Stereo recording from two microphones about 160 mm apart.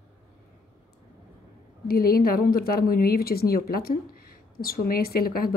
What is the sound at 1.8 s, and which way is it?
Speech, 70° left (ahead or behind).